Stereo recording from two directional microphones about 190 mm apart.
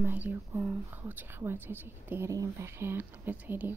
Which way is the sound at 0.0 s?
10° right (ahead or behind).